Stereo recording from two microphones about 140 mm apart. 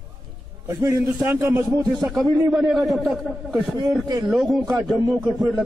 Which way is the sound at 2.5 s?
Centre (ahead or behind).